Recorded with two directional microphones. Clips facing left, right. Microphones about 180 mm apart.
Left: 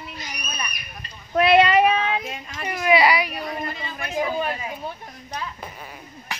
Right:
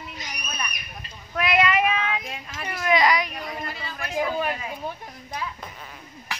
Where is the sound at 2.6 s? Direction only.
15° left (ahead or behind).